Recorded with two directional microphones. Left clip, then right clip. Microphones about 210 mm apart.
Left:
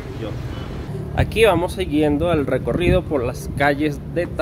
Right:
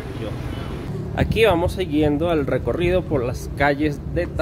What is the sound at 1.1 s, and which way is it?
Speech, 5° left (ahead or behind).